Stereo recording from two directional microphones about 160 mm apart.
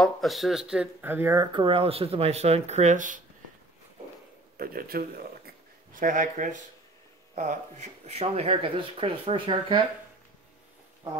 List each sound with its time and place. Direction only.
0.0 s speech: centre (ahead or behind); by 3.2 s 50° right (ahead or behind)
4.6 s a man's voice: 65° right (ahead or behind)
5.9 s speech: 55° right (ahead or behind); by 9.8 s 30° right (ahead or behind)